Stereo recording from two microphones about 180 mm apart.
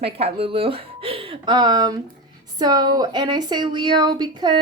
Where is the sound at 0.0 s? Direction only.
35° right (ahead or behind).